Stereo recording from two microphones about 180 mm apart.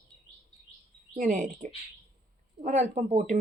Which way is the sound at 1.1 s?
45° right (ahead or behind).